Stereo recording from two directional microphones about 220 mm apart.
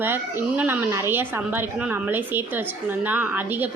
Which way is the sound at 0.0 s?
10° right (ahead or behind).